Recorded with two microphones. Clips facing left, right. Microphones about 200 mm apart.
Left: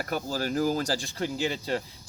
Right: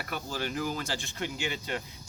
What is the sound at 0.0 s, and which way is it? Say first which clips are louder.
Speech: left 5 dB; 40° left (ahead or behind).